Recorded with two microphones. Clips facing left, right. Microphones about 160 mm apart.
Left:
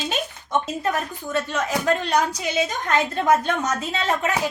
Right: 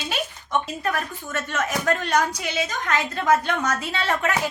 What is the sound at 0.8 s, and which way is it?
A woman's voice, 20° left (ahead or behind).